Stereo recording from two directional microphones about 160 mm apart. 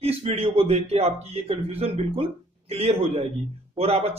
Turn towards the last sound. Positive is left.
turn(degrees=-40)  # may be behind; listen again after turning